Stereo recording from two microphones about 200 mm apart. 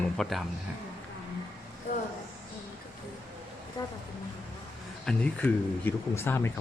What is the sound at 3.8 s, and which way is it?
Speech, 20° left (ahead or behind).